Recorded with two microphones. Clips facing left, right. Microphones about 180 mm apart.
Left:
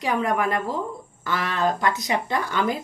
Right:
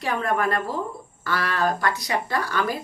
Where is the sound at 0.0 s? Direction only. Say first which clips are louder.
Left 1 dB; 15° left (ahead or behind).